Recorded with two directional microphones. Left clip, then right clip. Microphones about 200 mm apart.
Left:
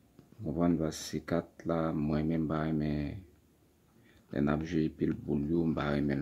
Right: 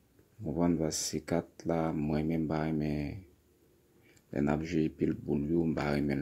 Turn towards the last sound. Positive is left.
turn(degrees=-5)  # may be behind; listen again after turning